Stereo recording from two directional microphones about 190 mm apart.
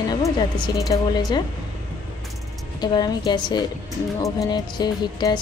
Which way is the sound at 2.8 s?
20° left (ahead or behind).